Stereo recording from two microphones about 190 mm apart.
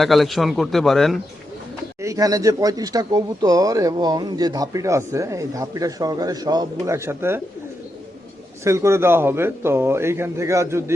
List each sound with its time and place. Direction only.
0.0 s a man's voice: centre (ahead or behind)
2.0 s speech: 15° right (ahead or behind)
8.6 s a man's voice: 15° right (ahead or behind)